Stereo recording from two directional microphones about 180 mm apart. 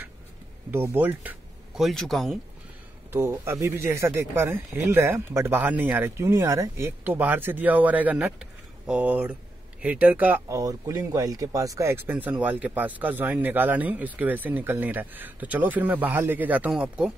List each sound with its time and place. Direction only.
0.7 s speech: 10° right (ahead or behind)
1.8 s speech: centre (ahead or behind)
3.1 s speech: 15° right (ahead or behind)